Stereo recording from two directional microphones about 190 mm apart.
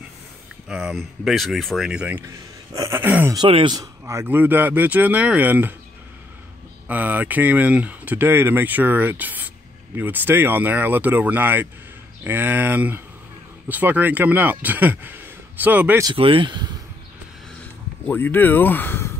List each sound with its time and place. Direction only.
0.7 s speech: 5° right (ahead or behind)
3.3 s speech: 25° right (ahead or behind); by 5.8 s 10° right (ahead or behind)
6.9 s speech: 10° right (ahead or behind)
16.1 s speech: 30° right (ahead or behind)
18.0 s speech: 10° left (ahead or behind)